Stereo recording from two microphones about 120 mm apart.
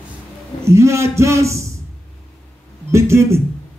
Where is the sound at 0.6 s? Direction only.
25° right (ahead or behind).